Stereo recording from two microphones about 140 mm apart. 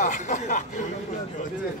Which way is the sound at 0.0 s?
60° left (ahead or behind).